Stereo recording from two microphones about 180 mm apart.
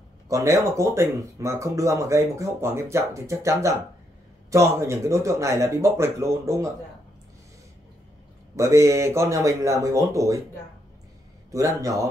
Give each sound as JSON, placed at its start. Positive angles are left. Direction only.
{"t": 0.3, "sound": "speech", "side_deg": -15}
{"t": 8.5, "sound": "speech", "side_deg": -15}
{"t": 11.5, "sound": "a man's voice", "side_deg": -20}